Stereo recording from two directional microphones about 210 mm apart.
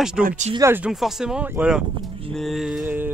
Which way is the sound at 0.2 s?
40° right (ahead or behind).